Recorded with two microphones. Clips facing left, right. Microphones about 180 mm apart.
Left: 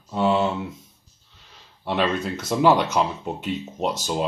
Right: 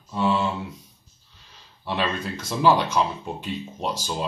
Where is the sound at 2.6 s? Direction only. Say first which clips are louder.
Left 1 dB; 20° left (ahead or behind).